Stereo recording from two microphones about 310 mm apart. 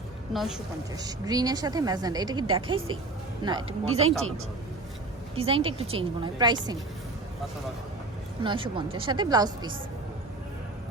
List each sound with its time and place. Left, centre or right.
0.3 s a woman's voice: centre
0.9 s a woman's voice: centre
5.4 s a woman's voice: centre
8.4 s a woman's voice: centre